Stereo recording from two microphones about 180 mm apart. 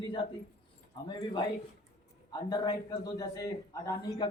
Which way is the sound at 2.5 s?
20° left (ahead or behind).